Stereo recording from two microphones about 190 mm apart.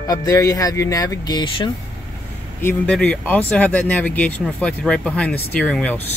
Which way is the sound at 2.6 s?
10° left (ahead or behind).